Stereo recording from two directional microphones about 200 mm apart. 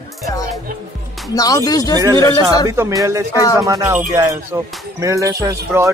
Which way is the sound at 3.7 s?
10° right (ahead or behind).